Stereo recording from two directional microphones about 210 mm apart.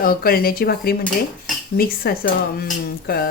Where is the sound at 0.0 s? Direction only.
45° left (ahead or behind).